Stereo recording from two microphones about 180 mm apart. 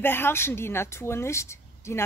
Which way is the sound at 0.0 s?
10° left (ahead or behind).